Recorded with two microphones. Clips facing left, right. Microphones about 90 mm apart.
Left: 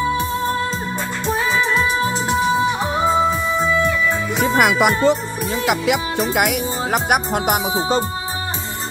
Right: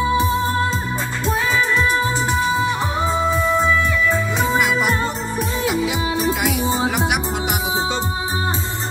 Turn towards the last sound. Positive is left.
turn(degrees=50)  # may be behind; listen again after turning